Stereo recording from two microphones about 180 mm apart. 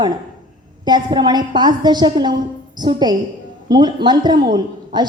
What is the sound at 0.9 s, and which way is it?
A woman's voice, 25° right (ahead or behind).